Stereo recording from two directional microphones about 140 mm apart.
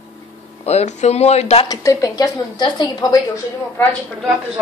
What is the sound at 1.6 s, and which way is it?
A woman's voice, 25° left (ahead or behind).